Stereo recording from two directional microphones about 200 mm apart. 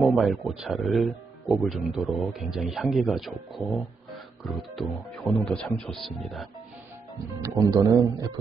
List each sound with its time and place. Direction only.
0.1 s speech: centre (ahead or behind)
4.1 s music: centre (ahead or behind)
4.9 s speech: 5° left (ahead or behind)
7.4 s speech: 15° right (ahead or behind)